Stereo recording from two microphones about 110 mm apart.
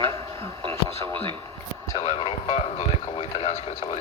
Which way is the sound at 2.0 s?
55° left (ahead or behind).